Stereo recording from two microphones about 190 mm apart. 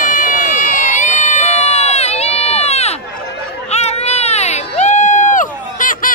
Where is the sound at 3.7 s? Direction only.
35° left (ahead or behind).